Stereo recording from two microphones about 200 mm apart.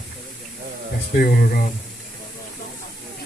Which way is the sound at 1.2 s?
50° left (ahead or behind).